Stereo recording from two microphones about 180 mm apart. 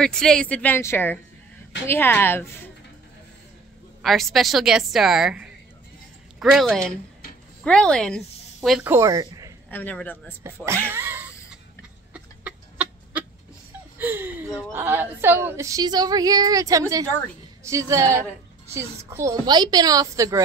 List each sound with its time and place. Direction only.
0.0 s a woman's voice: 5° left (ahead or behind)
4.0 s a woman's voice: centre (ahead or behind)
8.9 s speech: 20° right (ahead or behind)
9.7 s a woman's voice: 10° left (ahead or behind)
10.4 s speech: 15° right (ahead or behind)
12.1 s bird: 5° right (ahead or behind)
13.9 s a woman's voice: 10° right (ahead or behind)